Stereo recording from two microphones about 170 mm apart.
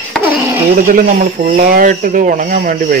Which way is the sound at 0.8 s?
55° right (ahead or behind).